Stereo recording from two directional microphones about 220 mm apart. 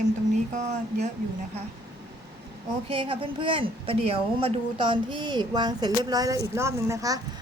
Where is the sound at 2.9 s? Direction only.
25° right (ahead or behind).